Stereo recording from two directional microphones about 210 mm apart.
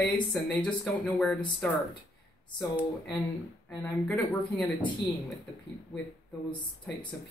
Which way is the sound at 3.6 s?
5° left (ahead or behind).